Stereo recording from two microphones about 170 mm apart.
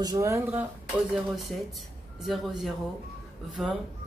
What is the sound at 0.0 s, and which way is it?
Speech, 20° right (ahead or behind).